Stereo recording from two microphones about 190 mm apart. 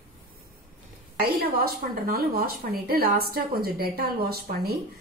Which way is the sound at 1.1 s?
55° right (ahead or behind).